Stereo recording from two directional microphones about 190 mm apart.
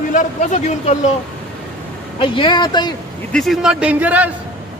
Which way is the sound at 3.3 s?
Centre (ahead or behind).